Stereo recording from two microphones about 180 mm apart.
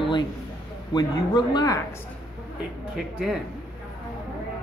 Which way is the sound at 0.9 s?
25° left (ahead or behind).